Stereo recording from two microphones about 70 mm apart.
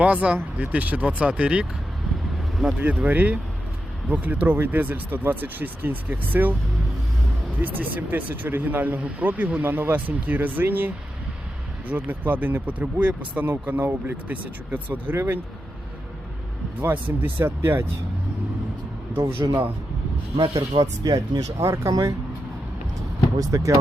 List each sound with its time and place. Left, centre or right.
0.0 s speech: centre
3.1 s speech: right
7.6 s speech: right
15.1 s speech: right
16.8 s speech: right
19.1 s speech: right
20.5 s speech: right
21.6 s speech: right